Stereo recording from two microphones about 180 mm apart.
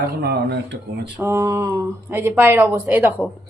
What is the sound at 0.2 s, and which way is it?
Speech, 70° right (ahead or behind).